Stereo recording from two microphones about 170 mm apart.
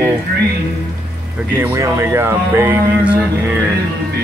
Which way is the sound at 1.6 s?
15° right (ahead or behind).